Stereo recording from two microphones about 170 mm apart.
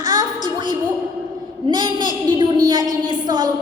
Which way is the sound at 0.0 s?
25° right (ahead or behind).